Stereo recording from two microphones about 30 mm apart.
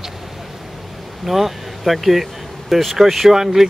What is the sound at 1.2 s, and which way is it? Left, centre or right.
Speech, centre.